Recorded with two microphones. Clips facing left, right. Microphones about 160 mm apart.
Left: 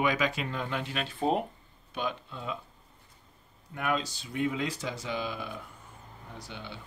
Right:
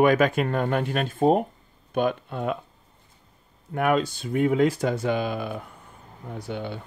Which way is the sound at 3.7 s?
55° right (ahead or behind).